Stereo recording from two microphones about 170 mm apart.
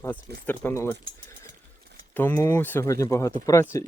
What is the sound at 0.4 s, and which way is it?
Speech, 15° left (ahead or behind).